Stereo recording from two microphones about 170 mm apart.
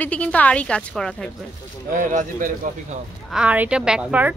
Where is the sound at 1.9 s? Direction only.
50° right (ahead or behind).